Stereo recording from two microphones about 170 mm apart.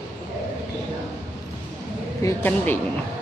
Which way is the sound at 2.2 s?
10° left (ahead or behind).